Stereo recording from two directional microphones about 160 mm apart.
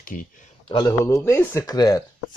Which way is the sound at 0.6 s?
30° left (ahead or behind).